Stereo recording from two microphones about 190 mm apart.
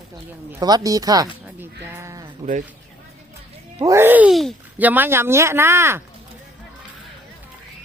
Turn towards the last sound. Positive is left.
turn(degrees=-15)  # may be behind; listen again after turning